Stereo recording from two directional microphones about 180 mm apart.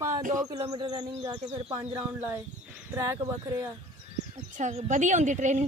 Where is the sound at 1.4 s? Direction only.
30° right (ahead or behind).